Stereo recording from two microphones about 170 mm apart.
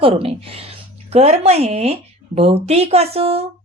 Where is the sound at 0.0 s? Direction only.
35° right (ahead or behind).